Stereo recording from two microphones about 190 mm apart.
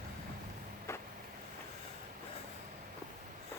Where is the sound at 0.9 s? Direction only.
15° left (ahead or behind).